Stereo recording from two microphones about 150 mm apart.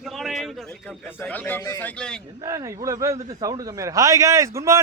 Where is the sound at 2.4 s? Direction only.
20° right (ahead or behind).